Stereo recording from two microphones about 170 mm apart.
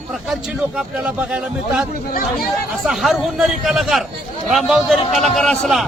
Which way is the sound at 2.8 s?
Centre (ahead or behind).